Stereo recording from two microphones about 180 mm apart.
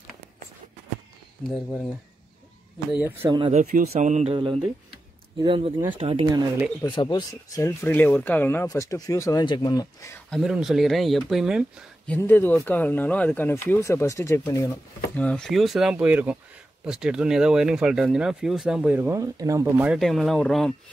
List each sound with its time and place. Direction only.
2.9 s speech: 10° right (ahead or behind)
3.3 s speech: 30° right (ahead or behind)
3.9 s speech: 40° right (ahead or behind)
6.8 s speech: 25° left (ahead or behind)
10.3 s speech: centre (ahead or behind)
12.1 s speech: 10° left (ahead or behind)
15.1 s speech: 5° left (ahead or behind)